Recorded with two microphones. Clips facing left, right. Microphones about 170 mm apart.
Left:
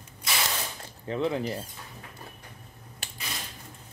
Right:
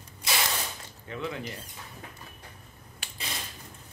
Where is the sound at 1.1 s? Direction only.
35° left (ahead or behind).